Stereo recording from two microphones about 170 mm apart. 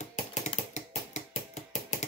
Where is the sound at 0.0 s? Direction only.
45° left (ahead or behind).